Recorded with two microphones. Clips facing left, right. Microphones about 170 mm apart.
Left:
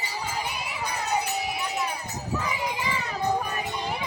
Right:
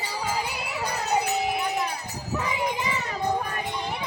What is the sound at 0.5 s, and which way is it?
Crowd, 65° right (ahead or behind).